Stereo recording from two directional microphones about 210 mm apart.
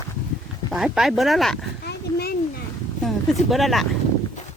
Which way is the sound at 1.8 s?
50° left (ahead or behind).